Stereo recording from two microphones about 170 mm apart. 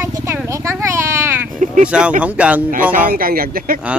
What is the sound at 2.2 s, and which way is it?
Speech, 10° right (ahead or behind).